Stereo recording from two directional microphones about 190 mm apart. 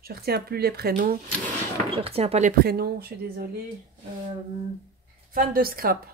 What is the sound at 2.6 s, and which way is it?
Speech, 55° right (ahead or behind).